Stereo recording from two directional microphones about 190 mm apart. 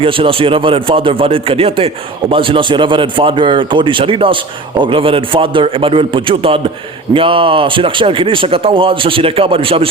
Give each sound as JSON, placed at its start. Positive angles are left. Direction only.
{"t": 0.0, "sound": "speech", "side_deg": -30}